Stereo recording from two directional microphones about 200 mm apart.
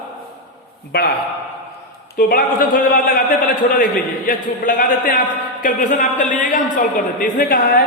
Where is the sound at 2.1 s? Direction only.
45° left (ahead or behind).